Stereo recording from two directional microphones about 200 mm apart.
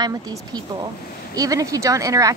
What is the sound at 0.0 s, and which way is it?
Speech, 20° right (ahead or behind).